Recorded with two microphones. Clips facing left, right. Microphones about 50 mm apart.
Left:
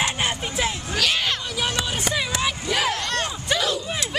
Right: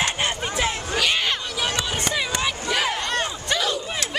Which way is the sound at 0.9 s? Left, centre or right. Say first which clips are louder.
Even; centre.